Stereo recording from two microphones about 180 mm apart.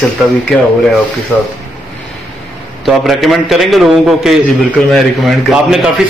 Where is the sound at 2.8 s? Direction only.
Centre (ahead or behind).